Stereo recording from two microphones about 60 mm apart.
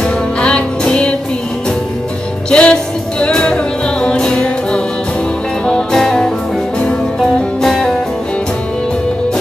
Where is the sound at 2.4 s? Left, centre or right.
Centre.